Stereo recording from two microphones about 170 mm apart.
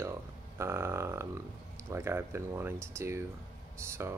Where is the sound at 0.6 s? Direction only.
15° right (ahead or behind).